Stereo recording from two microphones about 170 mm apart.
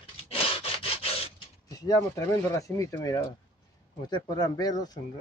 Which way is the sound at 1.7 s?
20° left (ahead or behind).